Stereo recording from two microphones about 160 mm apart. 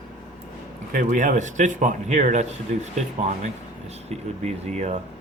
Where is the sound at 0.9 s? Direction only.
50° right (ahead or behind).